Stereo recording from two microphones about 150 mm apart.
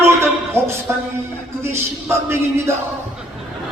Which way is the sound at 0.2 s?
15° right (ahead or behind).